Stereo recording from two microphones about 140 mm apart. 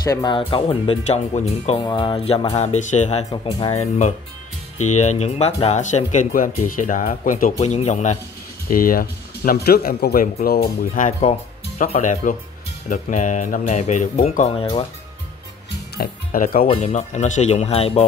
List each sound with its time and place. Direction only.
0.0 s speech: 25° left (ahead or behind); by 1.8 s 50° left (ahead or behind)
1.8 s speech: 35° left (ahead or behind)
2.5 s speech: 55° left (ahead or behind)
3.3 s speech: 35° left (ahead or behind)
3.7 s speech: 50° left (ahead or behind); by 7.5 s 75° left (ahead or behind)
7.5 s speech: 55° left (ahead or behind)
8.6 s speech: 90° left; by 14.5 s 65° left (ahead or behind)
16.0 s speech: 90° left
16.6 s speech: 40° left (ahead or behind)
16.9 s speech: 55° left (ahead or behind)